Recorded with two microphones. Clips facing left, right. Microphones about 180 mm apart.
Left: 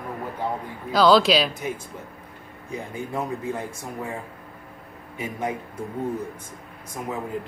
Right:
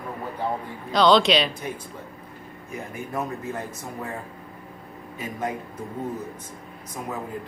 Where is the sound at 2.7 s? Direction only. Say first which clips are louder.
Left 1 dB; 10° left (ahead or behind).